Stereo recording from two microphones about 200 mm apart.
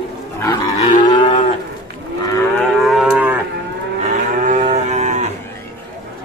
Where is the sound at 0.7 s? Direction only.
35° left (ahead or behind).